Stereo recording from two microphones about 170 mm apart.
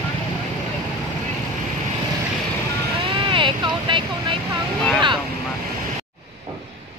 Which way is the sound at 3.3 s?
30° right (ahead or behind).